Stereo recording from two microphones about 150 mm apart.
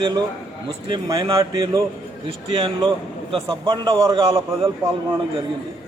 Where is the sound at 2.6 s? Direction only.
35° right (ahead or behind).